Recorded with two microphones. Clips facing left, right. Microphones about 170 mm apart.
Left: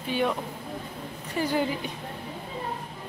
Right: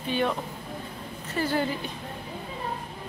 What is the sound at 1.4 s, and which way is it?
Speech, 15° left (ahead or behind).